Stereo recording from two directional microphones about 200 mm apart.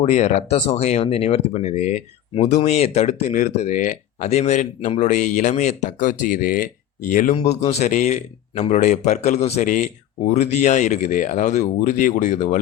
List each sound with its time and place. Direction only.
0.0 s speech: 35° left (ahead or behind)